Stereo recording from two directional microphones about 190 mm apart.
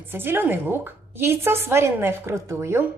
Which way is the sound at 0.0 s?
10° right (ahead or behind).